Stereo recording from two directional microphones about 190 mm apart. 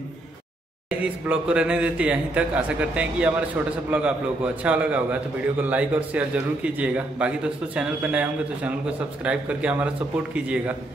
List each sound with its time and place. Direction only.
0.8 s a man's voice: 5° right (ahead or behind)